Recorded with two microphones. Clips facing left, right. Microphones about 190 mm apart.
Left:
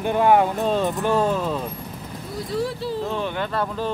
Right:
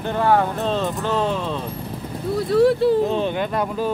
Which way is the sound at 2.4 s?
65° right (ahead or behind).